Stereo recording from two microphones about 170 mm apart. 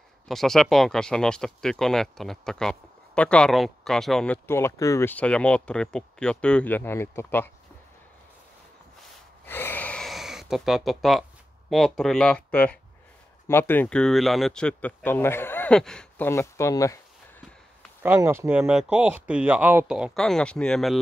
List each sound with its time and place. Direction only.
0.3 s speech: centre (ahead or behind)
9.5 s gasp: 10° left (ahead or behind)
11.7 s speech: centre (ahead or behind)
16.3 s speech: 15° left (ahead or behind)
18.0 s speech: 15° right (ahead or behind)